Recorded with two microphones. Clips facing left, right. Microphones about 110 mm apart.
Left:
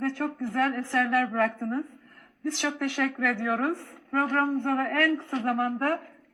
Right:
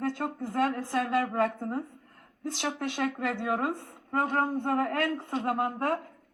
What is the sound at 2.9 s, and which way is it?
A woman's voice, 25° right (ahead or behind).